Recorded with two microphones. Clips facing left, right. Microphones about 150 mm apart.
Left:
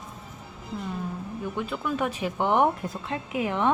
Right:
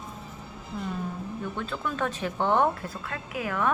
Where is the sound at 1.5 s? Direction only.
10° left (ahead or behind).